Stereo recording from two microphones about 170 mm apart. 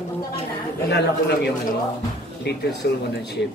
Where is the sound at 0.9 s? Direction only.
75° left (ahead or behind).